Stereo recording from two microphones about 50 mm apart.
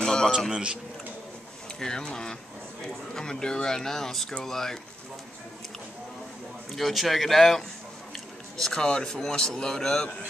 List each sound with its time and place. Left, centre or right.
0.0 s a sound: centre
0.5 s a man's voice: centre
1.8 s a man's voice: centre
6.7 s a man's voice: centre